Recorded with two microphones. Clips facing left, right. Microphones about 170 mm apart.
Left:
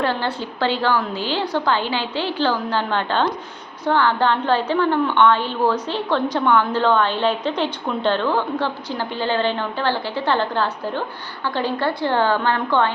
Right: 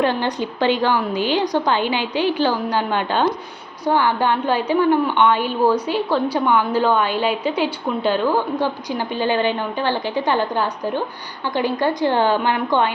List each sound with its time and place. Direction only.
0.0 s a woman's voice: 15° right (ahead or behind)